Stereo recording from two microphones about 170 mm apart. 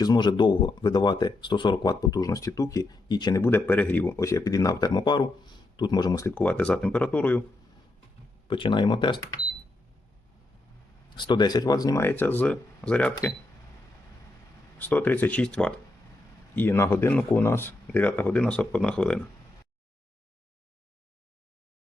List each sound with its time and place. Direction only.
0.0 s speech: 25° left (ahead or behind)
3.4 s speech: 10° left (ahead or behind)
8.4 s speech: 30° left (ahead or behind)
11.1 s speech: 25° left (ahead or behind); by 13.1 s 5° left (ahead or behind)
14.8 s speech: 10° left (ahead or behind)